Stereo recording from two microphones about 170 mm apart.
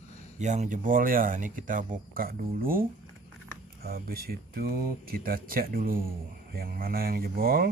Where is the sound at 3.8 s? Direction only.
65° right (ahead or behind).